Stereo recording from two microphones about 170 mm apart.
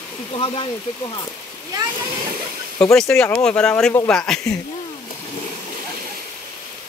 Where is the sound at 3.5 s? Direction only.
5° left (ahead or behind).